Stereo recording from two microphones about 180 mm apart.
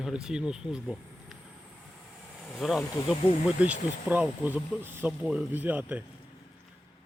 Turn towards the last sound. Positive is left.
turn(degrees=-10)  # may be behind; listen again after turning